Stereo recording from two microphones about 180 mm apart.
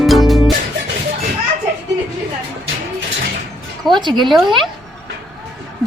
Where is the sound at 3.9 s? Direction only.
25° right (ahead or behind).